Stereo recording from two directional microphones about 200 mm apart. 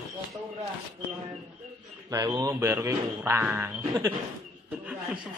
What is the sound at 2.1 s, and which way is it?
Speech, 15° right (ahead or behind).